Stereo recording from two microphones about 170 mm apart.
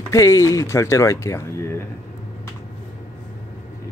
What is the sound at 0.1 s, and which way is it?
Speech, 15° left (ahead or behind).